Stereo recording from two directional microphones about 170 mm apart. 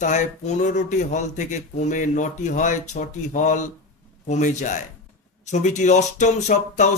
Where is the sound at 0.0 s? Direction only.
45° left (ahead or behind).